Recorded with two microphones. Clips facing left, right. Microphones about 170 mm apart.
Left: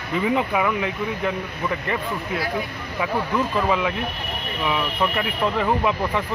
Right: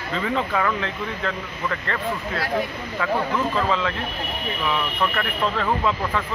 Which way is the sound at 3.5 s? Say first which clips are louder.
Left 1 dB; 15° left (ahead or behind).